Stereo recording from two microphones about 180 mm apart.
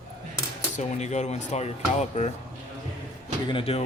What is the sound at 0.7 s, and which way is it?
Speech, 40° left (ahead or behind).